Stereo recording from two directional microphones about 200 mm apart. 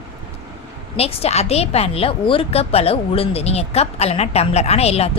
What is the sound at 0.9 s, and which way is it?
Speech, 30° left (ahead or behind).